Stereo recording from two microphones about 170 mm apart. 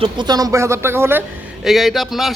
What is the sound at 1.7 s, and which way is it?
Speech, centre (ahead or behind).